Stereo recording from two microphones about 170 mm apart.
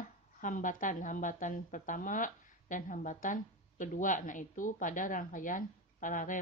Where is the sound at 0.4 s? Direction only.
50° left (ahead or behind).